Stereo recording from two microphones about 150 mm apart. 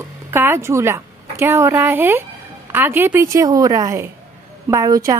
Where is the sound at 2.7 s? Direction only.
15° right (ahead or behind).